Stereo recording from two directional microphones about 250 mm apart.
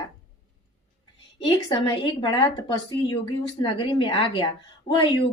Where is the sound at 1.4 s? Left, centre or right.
Centre.